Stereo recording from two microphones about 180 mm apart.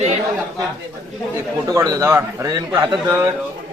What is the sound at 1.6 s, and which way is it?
A man's voice, 20° right (ahead or behind).